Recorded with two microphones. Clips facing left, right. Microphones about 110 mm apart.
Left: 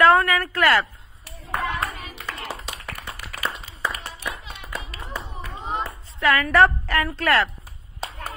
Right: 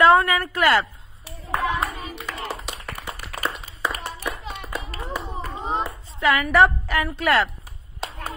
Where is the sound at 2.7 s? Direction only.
25° right (ahead or behind).